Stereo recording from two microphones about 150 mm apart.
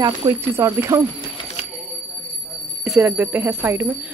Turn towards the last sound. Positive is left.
turn(degrees=-10)  # may be behind; listen again after turning